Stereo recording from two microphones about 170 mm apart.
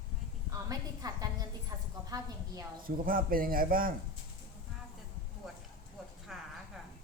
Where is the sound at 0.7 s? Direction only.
20° right (ahead or behind).